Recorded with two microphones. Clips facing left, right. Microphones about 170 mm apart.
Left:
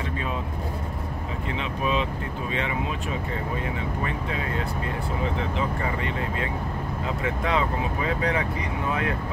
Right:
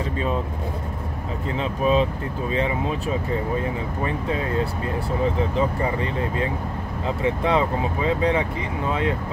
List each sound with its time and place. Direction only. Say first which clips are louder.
1.6 s speech: right 7 dB; 35° right (ahead or behind)
7.2 s speech: right 5 dB; 30° right (ahead or behind)